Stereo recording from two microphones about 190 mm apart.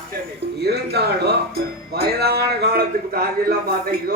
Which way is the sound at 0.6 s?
55° right (ahead or behind).